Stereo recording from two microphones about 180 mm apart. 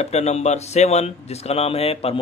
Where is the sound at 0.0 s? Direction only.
35° left (ahead or behind).